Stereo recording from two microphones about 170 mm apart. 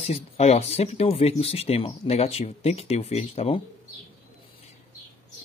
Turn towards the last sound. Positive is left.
turn(degrees=35)  # may be behind; listen again after turning